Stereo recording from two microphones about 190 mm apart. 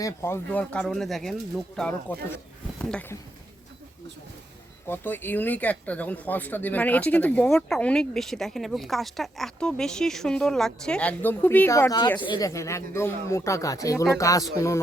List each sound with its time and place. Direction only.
0.0 s speech: 15° left (ahead or behind)
4.9 s speech: 10° left (ahead or behind)